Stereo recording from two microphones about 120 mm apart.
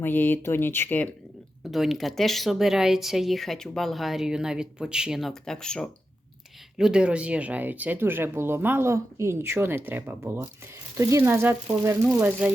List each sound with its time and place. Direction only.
0.0 s speech: 15° left (ahead or behind)
1.7 s speech: centre (ahead or behind)
6.7 s speech: 5° right (ahead or behind)